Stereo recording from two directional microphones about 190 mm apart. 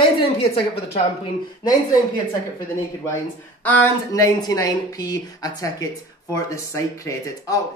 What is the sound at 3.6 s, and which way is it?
A woman's voice, 10° left (ahead or behind).